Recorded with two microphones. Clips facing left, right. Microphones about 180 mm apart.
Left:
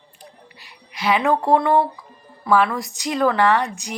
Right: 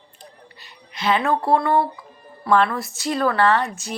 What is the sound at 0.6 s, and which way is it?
Speech, 10° left (ahead or behind).